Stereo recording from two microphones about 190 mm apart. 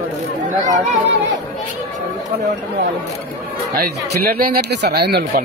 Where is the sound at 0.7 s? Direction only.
40° right (ahead or behind).